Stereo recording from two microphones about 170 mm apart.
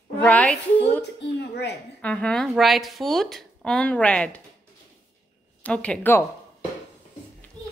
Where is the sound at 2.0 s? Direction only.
5° left (ahead or behind).